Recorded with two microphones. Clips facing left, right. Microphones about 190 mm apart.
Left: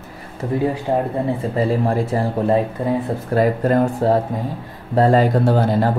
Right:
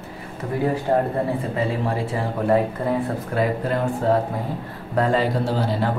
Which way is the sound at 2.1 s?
40° left (ahead or behind).